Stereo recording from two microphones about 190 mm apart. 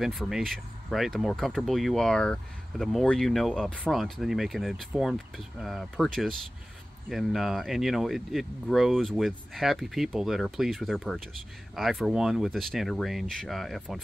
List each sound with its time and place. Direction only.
0.0 s speech: centre (ahead or behind)